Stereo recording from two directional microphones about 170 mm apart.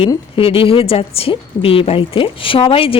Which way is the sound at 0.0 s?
30° left (ahead or behind).